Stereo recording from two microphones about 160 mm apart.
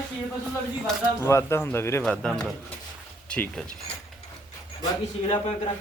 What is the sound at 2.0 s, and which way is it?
Speech, 5° left (ahead or behind).